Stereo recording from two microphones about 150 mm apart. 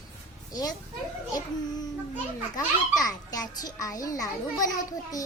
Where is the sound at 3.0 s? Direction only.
25° left (ahead or behind).